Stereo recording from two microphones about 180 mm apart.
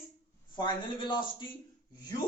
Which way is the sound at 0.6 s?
25° left (ahead or behind).